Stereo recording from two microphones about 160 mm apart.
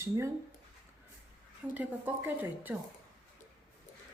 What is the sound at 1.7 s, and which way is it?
Speech, 10° right (ahead or behind).